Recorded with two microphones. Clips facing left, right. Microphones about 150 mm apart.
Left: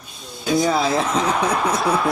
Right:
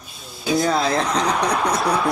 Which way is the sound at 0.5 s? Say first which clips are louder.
Left 1 dB; centre (ahead or behind).